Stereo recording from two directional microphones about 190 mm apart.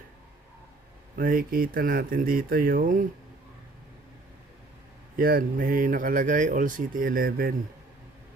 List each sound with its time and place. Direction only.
1.1 s speech: 50° right (ahead or behind)
5.1 s speech: 50° right (ahead or behind)